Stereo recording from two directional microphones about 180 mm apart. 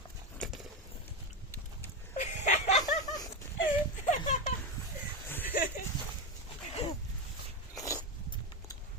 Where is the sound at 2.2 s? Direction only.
40° left (ahead or behind).